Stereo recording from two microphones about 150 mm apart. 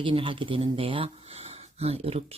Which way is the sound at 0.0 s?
35° right (ahead or behind).